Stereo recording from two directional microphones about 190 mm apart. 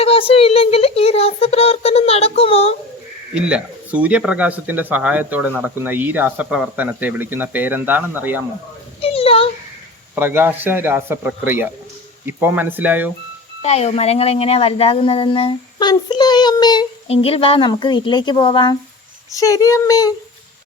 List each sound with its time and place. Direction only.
0.0 s speech: 30° left (ahead or behind)
3.3 s speech: 5° right (ahead or behind)
9.0 s a sound: 30° left (ahead or behind)
10.2 s speech: 10° right (ahead or behind)
13.6 s speech: 35° left (ahead or behind); by 20.1 s 20° left (ahead or behind)